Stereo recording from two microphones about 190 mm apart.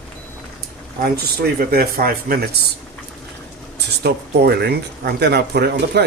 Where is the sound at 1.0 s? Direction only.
55° right (ahead or behind).